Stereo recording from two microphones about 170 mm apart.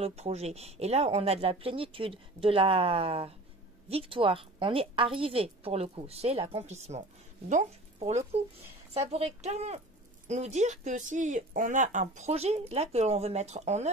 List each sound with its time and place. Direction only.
0.0 s speech: 40° right (ahead or behind)